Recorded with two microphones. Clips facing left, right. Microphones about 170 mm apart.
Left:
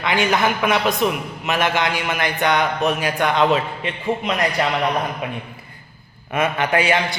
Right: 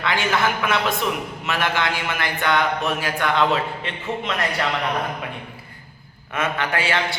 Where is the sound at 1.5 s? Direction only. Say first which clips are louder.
Left 3 dB; 20° left (ahead or behind).